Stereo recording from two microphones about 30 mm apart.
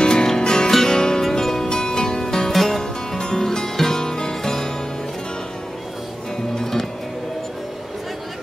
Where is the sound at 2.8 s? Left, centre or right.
Left.